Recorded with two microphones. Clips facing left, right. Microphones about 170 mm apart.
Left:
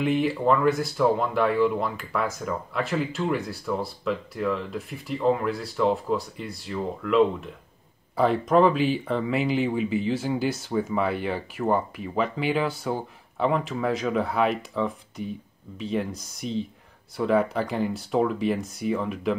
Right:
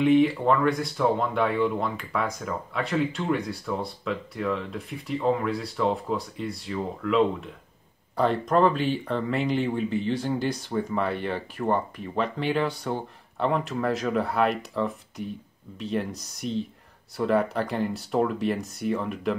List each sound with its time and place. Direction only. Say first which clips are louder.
0.0 s speech: right 3 dB; centre (ahead or behind)